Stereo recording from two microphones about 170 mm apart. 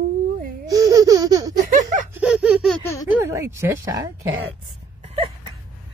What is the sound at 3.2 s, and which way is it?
Speech, 15° right (ahead or behind).